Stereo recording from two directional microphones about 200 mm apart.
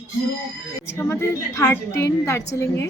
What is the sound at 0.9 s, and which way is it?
A woman's voice, 10° left (ahead or behind).